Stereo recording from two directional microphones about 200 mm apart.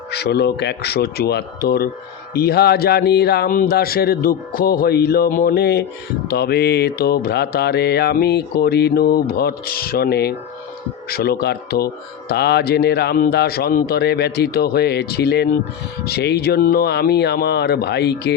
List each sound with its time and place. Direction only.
0.1 s mantra: 55° left (ahead or behind)